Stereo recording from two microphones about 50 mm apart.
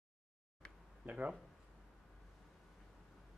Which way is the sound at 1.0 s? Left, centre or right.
Right.